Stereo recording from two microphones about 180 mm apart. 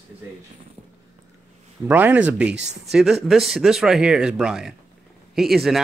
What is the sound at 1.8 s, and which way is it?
Speech, 10° right (ahead or behind).